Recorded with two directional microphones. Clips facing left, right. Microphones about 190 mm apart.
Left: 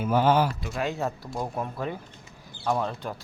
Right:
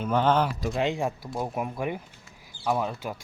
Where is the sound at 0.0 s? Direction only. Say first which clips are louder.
Left 1 dB; 5° left (ahead or behind).